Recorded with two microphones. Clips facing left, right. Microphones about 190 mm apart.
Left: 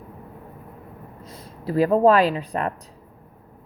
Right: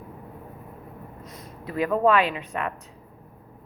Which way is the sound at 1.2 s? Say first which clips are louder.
Left 7 dB; 30° left (ahead or behind).